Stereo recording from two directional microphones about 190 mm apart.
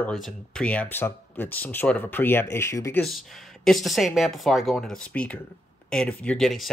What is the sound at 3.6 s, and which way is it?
Speech, centre (ahead or behind).